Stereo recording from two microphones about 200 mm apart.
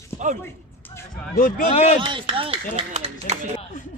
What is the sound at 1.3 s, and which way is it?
Speech, 40° left (ahead or behind).